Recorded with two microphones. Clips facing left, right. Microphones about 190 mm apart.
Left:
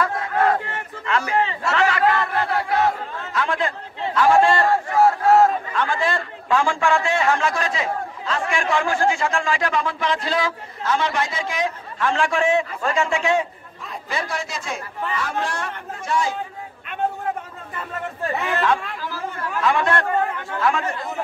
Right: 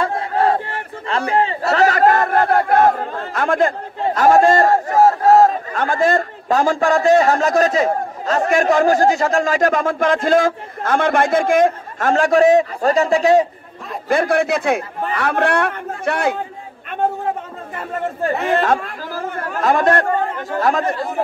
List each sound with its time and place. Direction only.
0.0 s speech: 30° right (ahead or behind)
14.0 s a man's voice: 55° right (ahead or behind)
18.3 s a man's voice: 45° right (ahead or behind)